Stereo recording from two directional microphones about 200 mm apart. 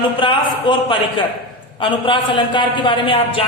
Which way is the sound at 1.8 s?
25° left (ahead or behind).